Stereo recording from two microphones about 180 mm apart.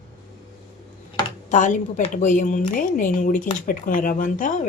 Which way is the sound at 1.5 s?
45° left (ahead or behind).